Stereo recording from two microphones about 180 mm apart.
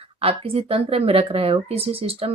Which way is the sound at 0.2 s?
30° right (ahead or behind).